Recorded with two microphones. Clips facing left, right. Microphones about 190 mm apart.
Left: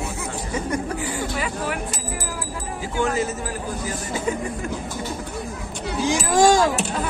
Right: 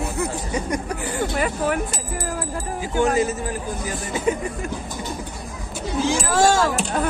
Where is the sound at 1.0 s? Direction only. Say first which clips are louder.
Right 3 dB; 50° right (ahead or behind).